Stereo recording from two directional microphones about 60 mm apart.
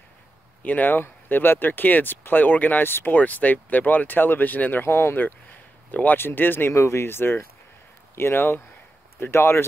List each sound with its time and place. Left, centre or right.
0.6 s speech: left
4.8 s speech: left
5.2 s speech: left